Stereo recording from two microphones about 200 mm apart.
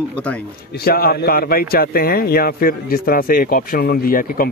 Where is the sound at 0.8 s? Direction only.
50° left (ahead or behind).